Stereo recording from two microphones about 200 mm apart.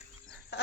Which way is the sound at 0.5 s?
55° left (ahead or behind).